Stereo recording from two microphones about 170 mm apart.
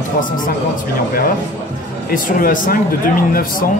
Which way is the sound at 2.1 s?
50° left (ahead or behind).